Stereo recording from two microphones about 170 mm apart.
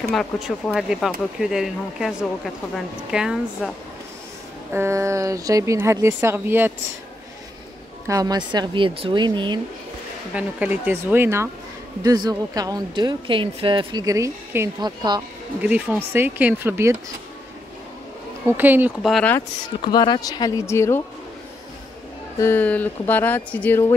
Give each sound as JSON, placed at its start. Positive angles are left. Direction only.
{"t": 0.1, "sound": "speech", "side_deg": 0}
{"t": 4.7, "sound": "a woman's voice", "side_deg": -15}
{"t": 8.1, "sound": "speech", "side_deg": -20}
{"t": 10.3, "sound": "a woman's voice", "side_deg": -10}
{"t": 15.6, "sound": "a woman's voice", "side_deg": -10}
{"t": 18.6, "sound": "a woman's voice", "side_deg": -10}
{"t": 19.0, "sound": "speech", "side_deg": 0}
{"t": 19.8, "sound": "speech", "side_deg": 25}
{"t": 22.4, "sound": "speech", "side_deg": 10}